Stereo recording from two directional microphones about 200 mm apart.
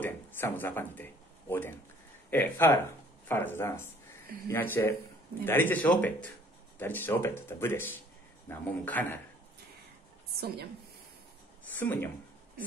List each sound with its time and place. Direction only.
0.0 s speech: 10° left (ahead or behind)
11.8 s speech: 10° left (ahead or behind)